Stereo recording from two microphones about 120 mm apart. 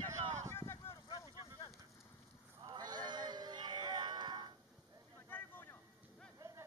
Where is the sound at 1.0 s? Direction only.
40° left (ahead or behind).